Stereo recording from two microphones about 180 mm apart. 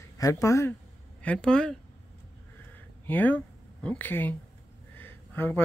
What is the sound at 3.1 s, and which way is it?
Speech, 10° left (ahead or behind).